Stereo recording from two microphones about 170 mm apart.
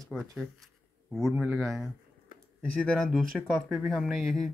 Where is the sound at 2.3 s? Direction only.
55° left (ahead or behind).